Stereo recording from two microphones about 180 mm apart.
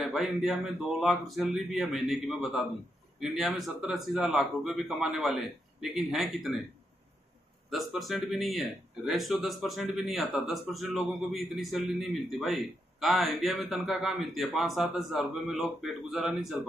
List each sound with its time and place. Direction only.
0.0 s a man's voice: centre (ahead or behind)
7.7 s a man's voice: centre (ahead or behind)